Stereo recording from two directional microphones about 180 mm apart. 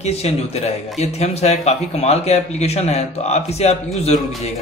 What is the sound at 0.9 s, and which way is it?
A man's voice, 35° left (ahead or behind).